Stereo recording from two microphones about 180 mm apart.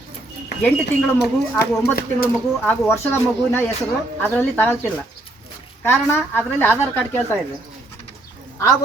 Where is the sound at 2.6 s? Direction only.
10° left (ahead or behind).